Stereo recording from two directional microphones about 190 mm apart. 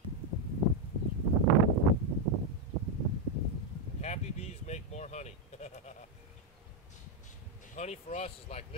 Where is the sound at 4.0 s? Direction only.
35° left (ahead or behind).